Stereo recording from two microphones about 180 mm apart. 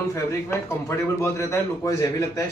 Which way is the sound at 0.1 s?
15° left (ahead or behind).